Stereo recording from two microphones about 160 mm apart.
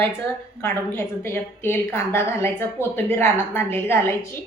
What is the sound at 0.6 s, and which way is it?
A woman's voice, 15° left (ahead or behind).